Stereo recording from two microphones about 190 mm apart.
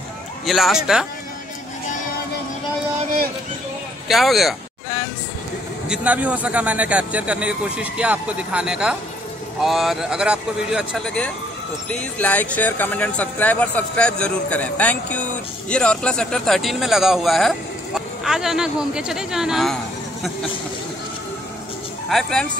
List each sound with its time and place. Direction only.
0.5 s speech: centre (ahead or behind)
4.1 s speech: centre (ahead or behind)
5.9 s a man's voice: 5° right (ahead or behind)
22.1 s speech: 5° left (ahead or behind)